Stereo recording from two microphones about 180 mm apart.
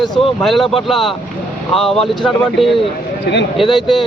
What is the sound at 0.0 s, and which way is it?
Speech, centre (ahead or behind).